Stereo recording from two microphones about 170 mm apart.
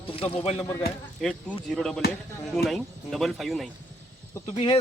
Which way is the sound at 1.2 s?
Centre (ahead or behind).